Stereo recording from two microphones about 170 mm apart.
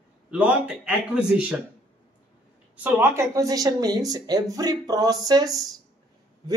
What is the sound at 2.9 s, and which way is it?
Speech, 15° right (ahead or behind).